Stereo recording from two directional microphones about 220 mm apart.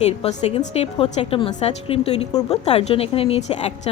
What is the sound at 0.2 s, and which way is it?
A woman's voice, 30° left (ahead or behind).